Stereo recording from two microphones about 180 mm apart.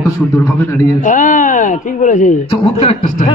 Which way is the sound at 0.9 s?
45° left (ahead or behind).